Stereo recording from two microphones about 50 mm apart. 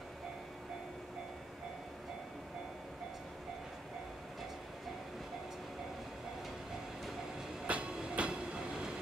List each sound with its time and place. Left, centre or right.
7.6 s train: right